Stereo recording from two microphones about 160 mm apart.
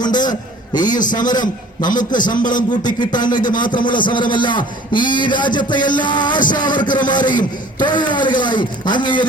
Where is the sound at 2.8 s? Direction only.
25° left (ahead or behind).